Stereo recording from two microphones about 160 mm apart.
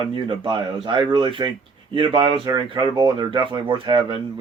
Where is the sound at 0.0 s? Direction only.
30° right (ahead or behind).